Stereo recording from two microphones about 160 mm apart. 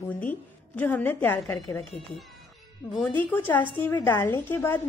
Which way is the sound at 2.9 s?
10° left (ahead or behind).